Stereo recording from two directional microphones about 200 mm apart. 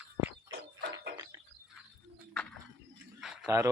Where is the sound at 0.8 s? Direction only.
60° right (ahead or behind).